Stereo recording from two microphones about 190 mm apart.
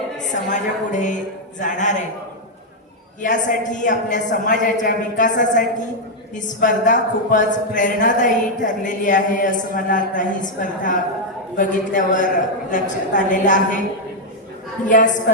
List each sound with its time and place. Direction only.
0.2 s a woman's voice: 40° left (ahead or behind)
3.2 s a woman's voice: 40° left (ahead or behind)
14.8 s a woman's voice: 40° left (ahead or behind)